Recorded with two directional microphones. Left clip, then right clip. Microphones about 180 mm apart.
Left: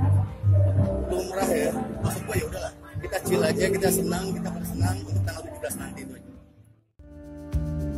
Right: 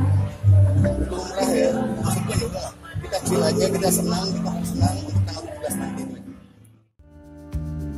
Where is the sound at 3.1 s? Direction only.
15° left (ahead or behind).